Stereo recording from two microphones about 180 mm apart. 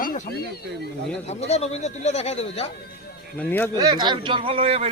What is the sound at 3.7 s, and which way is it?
A man's voice, 20° right (ahead or behind).